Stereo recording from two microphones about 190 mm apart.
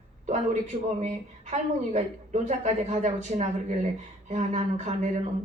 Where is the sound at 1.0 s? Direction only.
35° right (ahead or behind).